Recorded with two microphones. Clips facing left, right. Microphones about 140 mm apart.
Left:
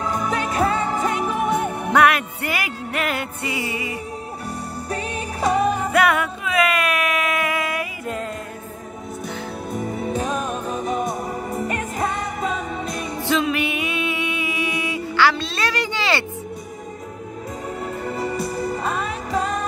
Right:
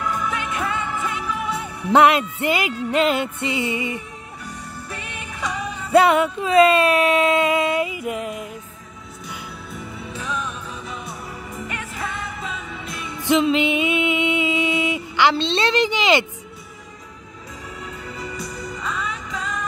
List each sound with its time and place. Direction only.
0.0 s music: 40° left (ahead or behind); by 1.9 s 55° left (ahead or behind)
2.0 s music: 25° right (ahead or behind)
4.8 s music: 40° left (ahead or behind)
5.9 s music: 25° right (ahead or behind)
9.7 s music: 45° left (ahead or behind)
13.3 s music: 20° right (ahead or behind)
18.0 s music: 50° left (ahead or behind)